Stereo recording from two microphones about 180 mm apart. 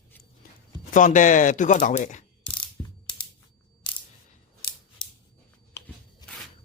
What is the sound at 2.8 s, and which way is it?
Mechanisms, 15° left (ahead or behind).